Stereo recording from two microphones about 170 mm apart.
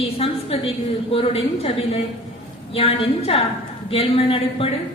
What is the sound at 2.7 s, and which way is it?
A woman's voice, 35° left (ahead or behind).